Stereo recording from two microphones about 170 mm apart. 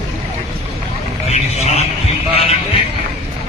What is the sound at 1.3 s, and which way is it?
Vehicle, 40° left (ahead or behind).